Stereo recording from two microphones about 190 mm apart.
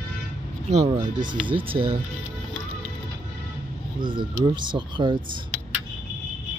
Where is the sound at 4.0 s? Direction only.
25° right (ahead or behind).